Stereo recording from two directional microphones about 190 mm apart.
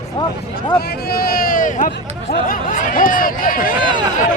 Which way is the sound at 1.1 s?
50° left (ahead or behind).